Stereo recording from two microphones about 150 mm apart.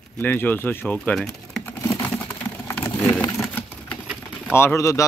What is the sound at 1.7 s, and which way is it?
Computer keyboard, 15° left (ahead or behind).